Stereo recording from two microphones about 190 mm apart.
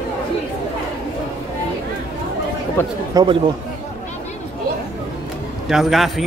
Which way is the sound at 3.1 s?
20° right (ahead or behind).